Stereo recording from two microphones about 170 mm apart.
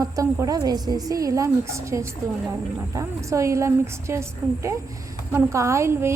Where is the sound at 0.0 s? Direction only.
20° right (ahead or behind).